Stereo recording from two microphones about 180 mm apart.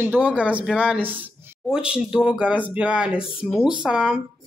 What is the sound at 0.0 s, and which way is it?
Speech, 10° right (ahead or behind).